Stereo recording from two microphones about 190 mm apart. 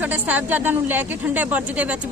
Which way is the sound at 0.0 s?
10° right (ahead or behind).